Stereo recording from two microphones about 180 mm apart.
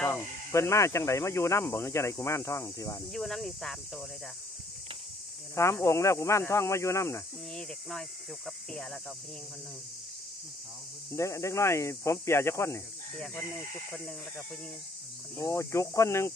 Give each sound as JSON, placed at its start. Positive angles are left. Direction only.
{"t": 0.0, "sound": "speech", "side_deg": 15}
{"t": 3.1, "sound": "speech", "side_deg": 0}
{"t": 5.5, "sound": "speech", "side_deg": 15}
{"t": 11.1, "sound": "speech", "side_deg": 15}
{"t": 15.3, "sound": "speech", "side_deg": 15}